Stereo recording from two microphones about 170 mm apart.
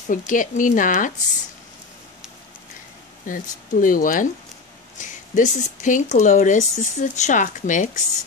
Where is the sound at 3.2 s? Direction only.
50° left (ahead or behind).